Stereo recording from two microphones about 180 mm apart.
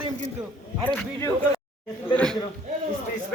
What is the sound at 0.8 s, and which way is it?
A man's voice, 10° left (ahead or behind).